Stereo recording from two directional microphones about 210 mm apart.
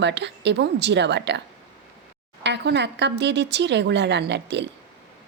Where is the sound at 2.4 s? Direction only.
55° right (ahead or behind).